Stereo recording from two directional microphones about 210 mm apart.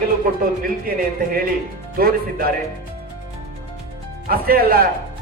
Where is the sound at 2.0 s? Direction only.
45° right (ahead or behind).